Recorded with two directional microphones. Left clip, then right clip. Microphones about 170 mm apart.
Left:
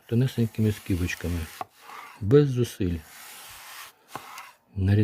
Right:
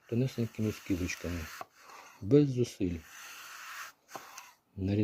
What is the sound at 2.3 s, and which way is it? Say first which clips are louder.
Speech: left 6 dB; 45° left (ahead or behind).